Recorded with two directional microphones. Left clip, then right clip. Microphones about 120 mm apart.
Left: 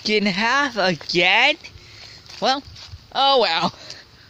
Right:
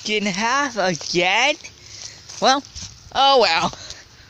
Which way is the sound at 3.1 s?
15° right (ahead or behind).